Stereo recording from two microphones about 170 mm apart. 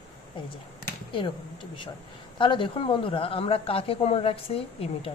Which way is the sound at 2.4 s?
30° left (ahead or behind).